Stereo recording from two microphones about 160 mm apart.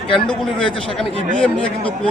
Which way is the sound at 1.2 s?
50° right (ahead or behind).